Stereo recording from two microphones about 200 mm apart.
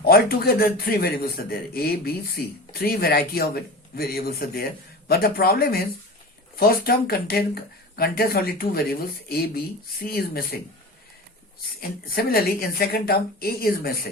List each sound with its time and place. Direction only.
0.0 s a man's voice: 50° left (ahead or behind)
11.8 s a man's voice: 50° left (ahead or behind)